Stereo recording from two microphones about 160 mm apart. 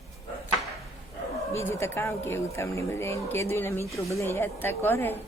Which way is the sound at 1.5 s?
15° left (ahead or behind).